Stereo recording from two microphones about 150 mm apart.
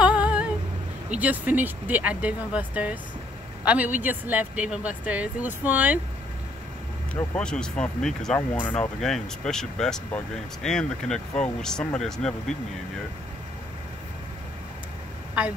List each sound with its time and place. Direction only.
0.0 s humming: 10° right (ahead or behind)
1.2 s speech: 10° right (ahead or behind)
7.3 s speech: 5° left (ahead or behind)
15.4 s a woman's voice: 10° right (ahead or behind)